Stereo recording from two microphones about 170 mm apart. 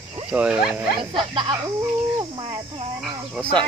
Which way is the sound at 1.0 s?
30° right (ahead or behind).